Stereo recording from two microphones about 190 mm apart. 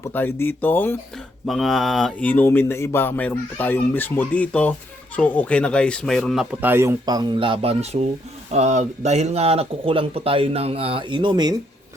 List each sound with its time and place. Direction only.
0.1 s speech: 10° left (ahead or behind); by 11.5 s 25° right (ahead or behind)